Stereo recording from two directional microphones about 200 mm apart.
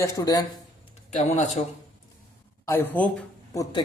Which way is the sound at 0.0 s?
20° left (ahead or behind).